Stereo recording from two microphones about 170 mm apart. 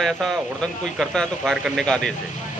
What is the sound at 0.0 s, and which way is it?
Speech, centre (ahead or behind).